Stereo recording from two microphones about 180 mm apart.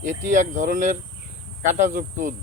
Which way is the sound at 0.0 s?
45° right (ahead or behind).